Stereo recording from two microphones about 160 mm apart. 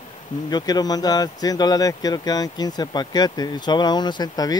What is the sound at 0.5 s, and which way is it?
Speech, 25° left (ahead or behind).